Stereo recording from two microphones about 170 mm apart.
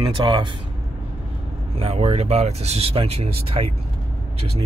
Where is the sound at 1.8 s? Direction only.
35° right (ahead or behind).